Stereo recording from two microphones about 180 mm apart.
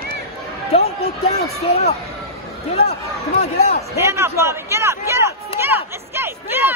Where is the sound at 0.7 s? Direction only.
35° left (ahead or behind).